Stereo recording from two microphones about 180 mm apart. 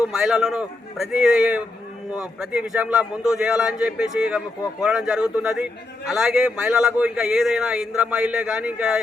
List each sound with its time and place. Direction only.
0.0 s a man's voice: centre (ahead or behind)